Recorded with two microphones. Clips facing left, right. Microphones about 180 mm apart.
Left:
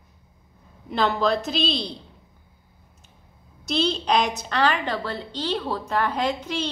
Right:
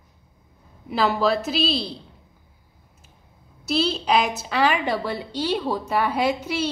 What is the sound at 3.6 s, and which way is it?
A woman's voice, 5° right (ahead or behind).